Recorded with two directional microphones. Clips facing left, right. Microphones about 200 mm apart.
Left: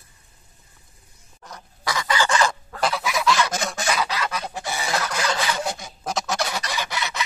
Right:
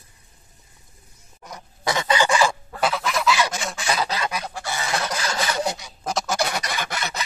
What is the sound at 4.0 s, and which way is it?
Goose, 30° right (ahead or behind).